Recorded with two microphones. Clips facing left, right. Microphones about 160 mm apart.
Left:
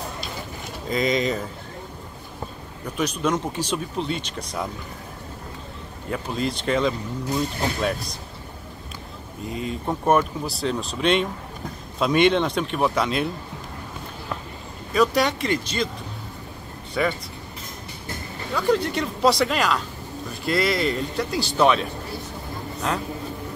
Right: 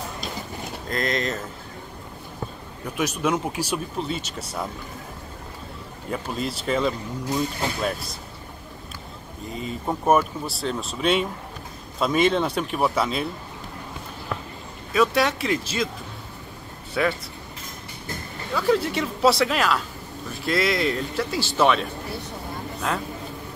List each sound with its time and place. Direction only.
0.8 s speech: centre (ahead or behind)
3.0 s speech: 5° right (ahead or behind)
6.0 s speech: centre (ahead or behind)
9.5 s speech: centre (ahead or behind)
14.9 s speech: centre (ahead or behind)
17.0 s speech: centre (ahead or behind)
18.5 s speech: 5° right (ahead or behind)